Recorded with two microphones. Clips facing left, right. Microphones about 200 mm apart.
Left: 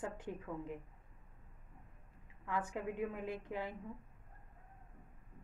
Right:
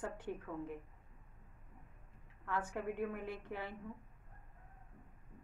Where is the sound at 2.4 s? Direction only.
15° left (ahead or behind).